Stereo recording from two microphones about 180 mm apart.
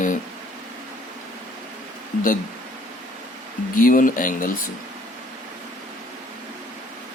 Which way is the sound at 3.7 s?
50° left (ahead or behind).